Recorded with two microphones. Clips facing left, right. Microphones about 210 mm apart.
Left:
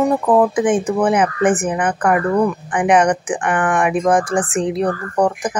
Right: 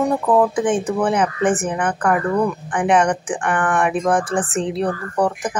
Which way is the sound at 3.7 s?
15° left (ahead or behind).